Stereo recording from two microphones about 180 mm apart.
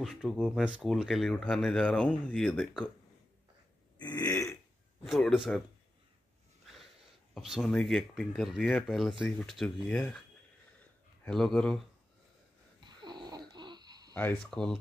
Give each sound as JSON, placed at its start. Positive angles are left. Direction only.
{"t": 0.0, "sound": "speech", "side_deg": 0}
{"t": 4.0, "sound": "burping", "side_deg": 20}
{"t": 5.0, "sound": "speech", "side_deg": 0}
{"t": 7.3, "sound": "speech", "side_deg": 0}
{"t": 11.2, "sound": "speech", "side_deg": 5}
{"t": 12.8, "sound": "a sound", "side_deg": -25}
{"t": 14.1, "sound": "speech", "side_deg": 10}